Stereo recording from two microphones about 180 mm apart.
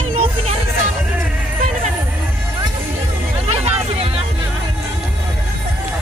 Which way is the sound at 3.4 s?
35° right (ahead or behind).